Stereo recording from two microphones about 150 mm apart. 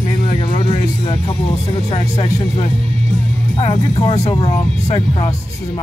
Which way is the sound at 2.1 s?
40° left (ahead or behind).